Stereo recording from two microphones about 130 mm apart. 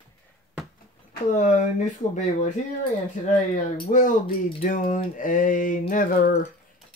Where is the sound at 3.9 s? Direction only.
85° left.